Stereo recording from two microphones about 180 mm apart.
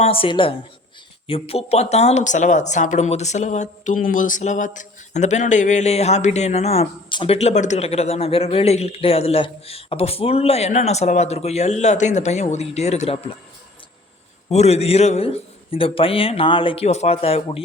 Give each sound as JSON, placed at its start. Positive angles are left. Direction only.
{"t": 0.0, "sound": "a woman's voice", "side_deg": 30}
{"t": 14.5, "sound": "speech", "side_deg": 35}